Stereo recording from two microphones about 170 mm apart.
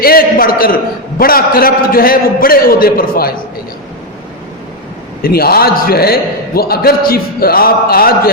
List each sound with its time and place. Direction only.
0.0 s a sound: 60° left (ahead or behind)
1.2 s a man's voice: 60° left (ahead or behind)
5.2 s a man's voice: 60° left (ahead or behind)